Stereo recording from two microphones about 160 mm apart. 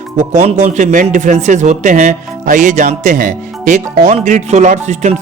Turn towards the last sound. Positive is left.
turn(degrees=-45)  # may be behind; listen again after turning